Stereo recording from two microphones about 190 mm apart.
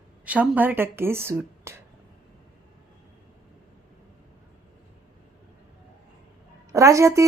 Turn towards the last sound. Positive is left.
turn(degrees=-15)  # may be behind; listen again after turning